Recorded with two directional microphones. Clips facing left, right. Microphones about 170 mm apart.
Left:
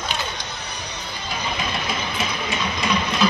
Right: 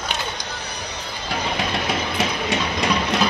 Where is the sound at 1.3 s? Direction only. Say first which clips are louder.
Right 3 dB; 70° right (ahead or behind).